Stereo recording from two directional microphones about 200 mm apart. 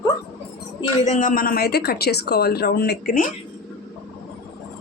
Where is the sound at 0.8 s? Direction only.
35° left (ahead or behind); by 3.2 s 50° left (ahead or behind).